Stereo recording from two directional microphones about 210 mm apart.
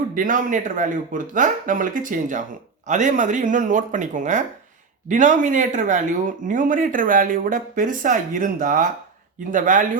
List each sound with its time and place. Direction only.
0.1 s speech: 40° right (ahead or behind)